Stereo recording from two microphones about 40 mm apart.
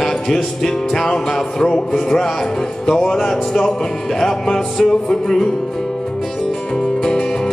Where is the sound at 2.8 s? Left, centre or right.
Centre.